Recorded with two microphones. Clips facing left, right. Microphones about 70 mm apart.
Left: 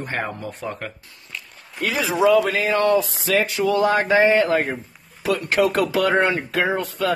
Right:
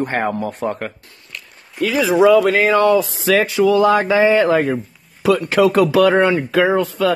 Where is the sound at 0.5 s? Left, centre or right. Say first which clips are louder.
Right 7 dB; right.